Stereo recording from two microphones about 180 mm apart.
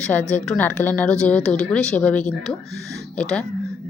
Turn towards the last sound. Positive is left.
turn(degrees=5)  # may be behind; listen again after turning